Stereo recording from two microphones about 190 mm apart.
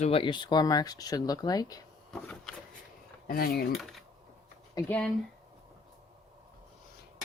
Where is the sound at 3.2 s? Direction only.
50° left (ahead or behind).